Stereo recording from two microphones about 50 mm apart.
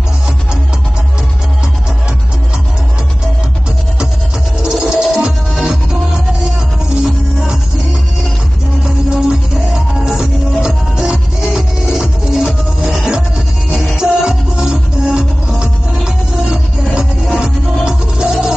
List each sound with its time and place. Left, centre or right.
4.6 s music: centre
9.1 s music: centre